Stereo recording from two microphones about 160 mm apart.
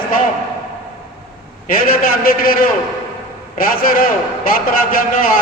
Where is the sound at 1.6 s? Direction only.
65° left (ahead or behind).